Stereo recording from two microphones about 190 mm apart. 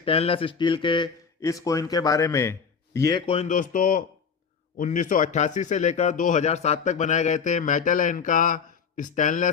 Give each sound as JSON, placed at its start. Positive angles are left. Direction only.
{"t": 0.0, "sound": "speech", "side_deg": 30}